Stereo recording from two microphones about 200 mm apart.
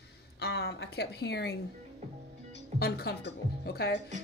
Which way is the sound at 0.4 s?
55° left (ahead or behind).